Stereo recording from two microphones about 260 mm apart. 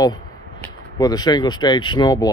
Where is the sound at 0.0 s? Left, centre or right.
Centre.